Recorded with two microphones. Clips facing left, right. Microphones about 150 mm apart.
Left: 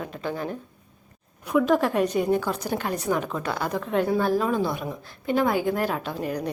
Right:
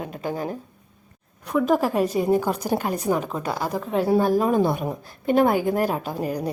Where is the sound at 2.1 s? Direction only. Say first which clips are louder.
Right 2 dB; 35° right (ahead or behind).